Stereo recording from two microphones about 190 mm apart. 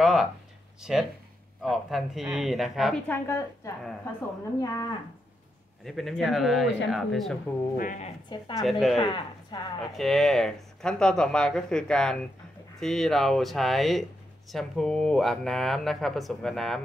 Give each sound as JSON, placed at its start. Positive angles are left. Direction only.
{"t": 0.0, "sound": "a sound", "side_deg": 0}
{"t": 0.7, "sound": "speech", "side_deg": -5}
{"t": 5.9, "sound": "speech", "side_deg": 0}
{"t": 7.7, "sound": "speech", "side_deg": 45}
{"t": 8.5, "sound": "speech", "side_deg": 0}
{"t": 9.0, "sound": "speech", "side_deg": 25}
{"t": 9.9, "sound": "speech", "side_deg": 0}